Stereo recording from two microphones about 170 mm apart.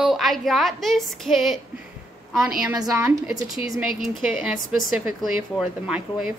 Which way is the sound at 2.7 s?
20° right (ahead or behind).